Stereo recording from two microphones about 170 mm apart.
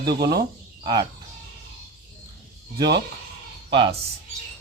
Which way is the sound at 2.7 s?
25° right (ahead or behind).